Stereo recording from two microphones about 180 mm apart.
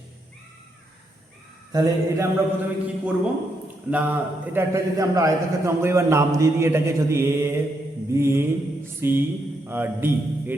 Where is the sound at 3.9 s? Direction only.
10° right (ahead or behind).